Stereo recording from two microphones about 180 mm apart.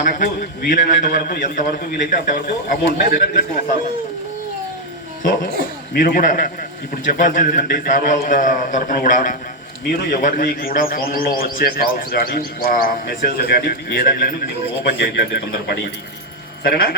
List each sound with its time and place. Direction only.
0.0 s a man's voice: 50° left (ahead or behind)
5.2 s a man's voice: 50° left (ahead or behind)
14.9 s a man's voice: 70° left (ahead or behind)